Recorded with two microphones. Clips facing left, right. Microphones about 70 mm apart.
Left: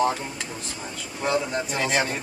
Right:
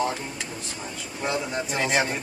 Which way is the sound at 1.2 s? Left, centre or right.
Centre.